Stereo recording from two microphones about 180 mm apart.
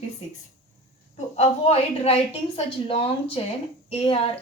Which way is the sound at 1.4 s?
35° left (ahead or behind).